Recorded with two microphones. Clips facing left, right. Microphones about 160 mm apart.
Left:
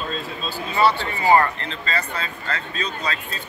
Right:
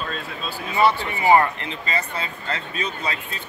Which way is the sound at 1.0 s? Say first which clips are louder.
Even; 20° right (ahead or behind).